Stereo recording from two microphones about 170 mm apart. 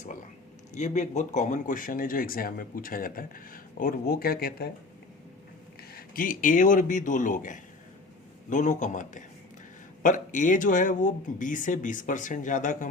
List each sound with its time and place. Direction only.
0.7 s speech: 45° left (ahead or behind); by 4.7 s 65° left (ahead or behind)
5.9 s speech: 60° left (ahead or behind)